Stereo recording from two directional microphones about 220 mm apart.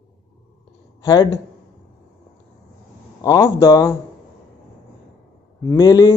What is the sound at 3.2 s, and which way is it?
Speech, 10° left (ahead or behind).